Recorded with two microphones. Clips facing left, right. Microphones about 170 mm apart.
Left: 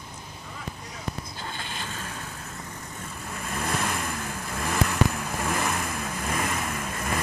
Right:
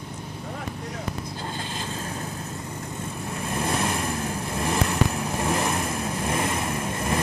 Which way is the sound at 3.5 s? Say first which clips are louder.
Right 3 dB; 30° right (ahead or behind).